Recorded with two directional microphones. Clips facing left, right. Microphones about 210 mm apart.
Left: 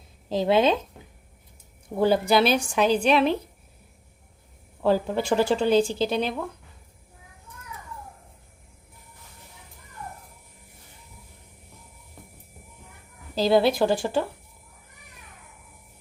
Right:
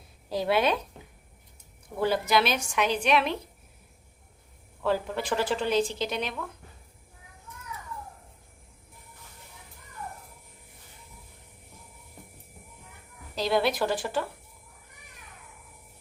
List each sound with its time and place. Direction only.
0.3 s a woman's voice: 25° left (ahead or behind)
2.0 s a woman's voice: 30° left (ahead or behind)
4.8 s a woman's voice: 30° left (ahead or behind)
13.3 s a woman's voice: 30° left (ahead or behind)